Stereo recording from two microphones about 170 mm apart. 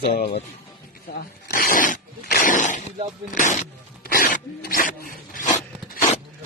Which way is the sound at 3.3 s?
50° left (ahead or behind).